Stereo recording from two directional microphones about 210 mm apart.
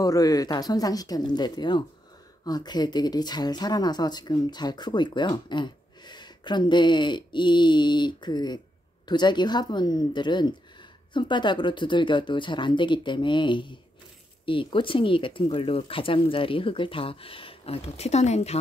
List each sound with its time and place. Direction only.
0.0 s speech: 15° left (ahead or behind); by 18.6 s 30° left (ahead or behind)